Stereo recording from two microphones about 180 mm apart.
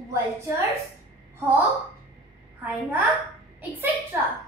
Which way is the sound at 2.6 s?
10° right (ahead or behind).